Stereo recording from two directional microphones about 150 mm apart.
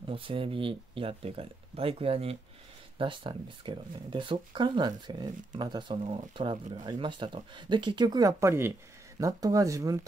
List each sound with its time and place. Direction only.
0.0 s speech: 35° right (ahead or behind)